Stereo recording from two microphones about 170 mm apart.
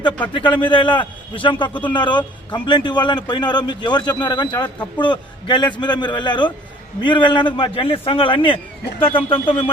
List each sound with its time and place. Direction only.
0.0 s a man's voice: 25° left (ahead or behind)